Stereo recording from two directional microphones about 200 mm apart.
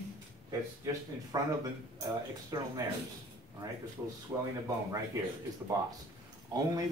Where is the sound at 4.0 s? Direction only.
10° right (ahead or behind).